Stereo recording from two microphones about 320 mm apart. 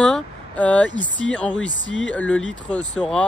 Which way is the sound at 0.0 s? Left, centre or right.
Centre.